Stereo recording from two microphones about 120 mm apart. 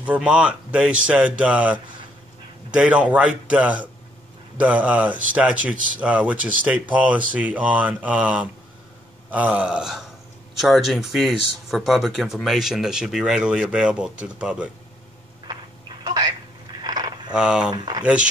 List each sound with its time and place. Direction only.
0.0 s speech: 10° right (ahead or behind)
16.0 s telephone: 35° right (ahead or behind)
16.8 s a sound: 35° right (ahead or behind)
17.3 s speech: 10° right (ahead or behind)